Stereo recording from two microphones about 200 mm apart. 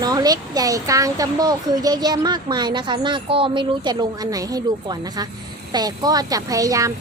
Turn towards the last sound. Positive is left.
turn(degrees=-15)  # may be behind; listen again after turning